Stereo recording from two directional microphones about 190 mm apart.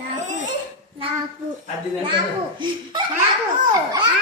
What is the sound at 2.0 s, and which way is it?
Speech, 25° right (ahead or behind).